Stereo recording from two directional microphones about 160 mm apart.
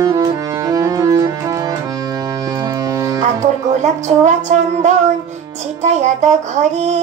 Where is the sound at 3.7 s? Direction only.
45° right (ahead or behind).